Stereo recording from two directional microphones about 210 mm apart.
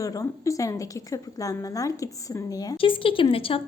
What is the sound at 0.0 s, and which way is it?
A woman's voice, 15° left (ahead or behind).